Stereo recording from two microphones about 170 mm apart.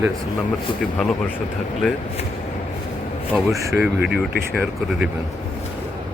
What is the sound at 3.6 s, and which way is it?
Speech, 15° right (ahead or behind).